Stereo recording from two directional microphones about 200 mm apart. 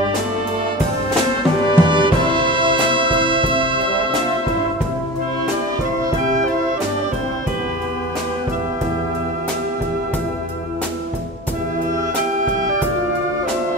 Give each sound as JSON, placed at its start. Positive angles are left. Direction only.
{"t": 1.7, "sound": "music", "side_deg": -25}